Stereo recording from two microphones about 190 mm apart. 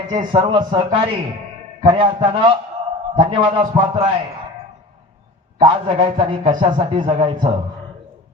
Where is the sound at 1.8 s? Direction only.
25° right (ahead or behind).